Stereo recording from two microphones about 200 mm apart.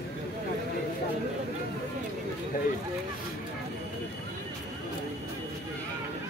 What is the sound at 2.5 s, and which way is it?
Speech, 45° left (ahead or behind).